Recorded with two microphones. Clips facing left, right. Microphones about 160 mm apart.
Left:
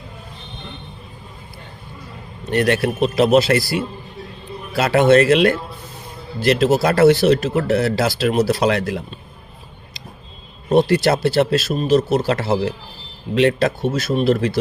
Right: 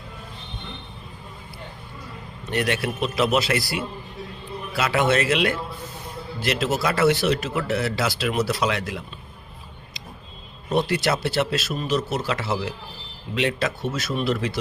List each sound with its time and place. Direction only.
2.5 s speech: 40° left (ahead or behind)
10.7 s speech: 35° left (ahead or behind)